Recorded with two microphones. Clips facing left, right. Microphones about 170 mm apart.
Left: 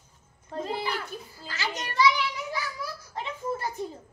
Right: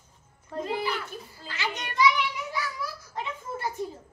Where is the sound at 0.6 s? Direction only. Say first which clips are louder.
Right 2 dB; 35° left (ahead or behind).